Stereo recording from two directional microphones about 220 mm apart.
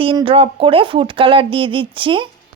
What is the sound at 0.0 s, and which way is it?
Speech, 25° right (ahead or behind).